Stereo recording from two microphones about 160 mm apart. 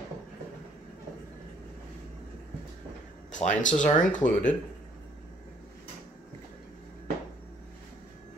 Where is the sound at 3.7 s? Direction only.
50° left (ahead or behind).